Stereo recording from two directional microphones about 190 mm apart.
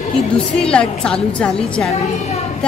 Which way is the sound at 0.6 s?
5° left (ahead or behind).